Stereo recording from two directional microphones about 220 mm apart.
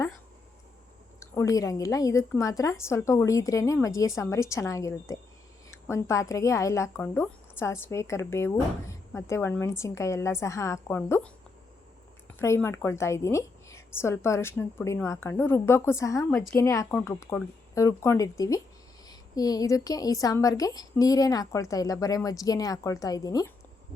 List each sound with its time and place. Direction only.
1.2 s speech: 15° left (ahead or behind)
12.4 s speech: 10° left (ahead or behind)